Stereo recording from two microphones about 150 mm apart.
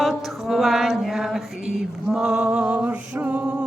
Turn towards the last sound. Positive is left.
turn(degrees=-5)  # may be behind; listen again after turning